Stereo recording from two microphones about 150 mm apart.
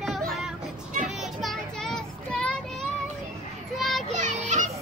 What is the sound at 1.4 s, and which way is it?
Child singing, 5° left (ahead or behind).